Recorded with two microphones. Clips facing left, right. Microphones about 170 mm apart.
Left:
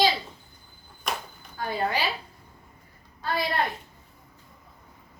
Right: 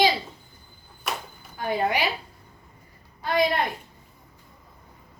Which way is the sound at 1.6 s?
15° right (ahead or behind).